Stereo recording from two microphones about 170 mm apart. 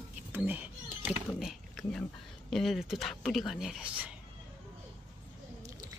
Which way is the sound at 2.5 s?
Centre (ahead or behind).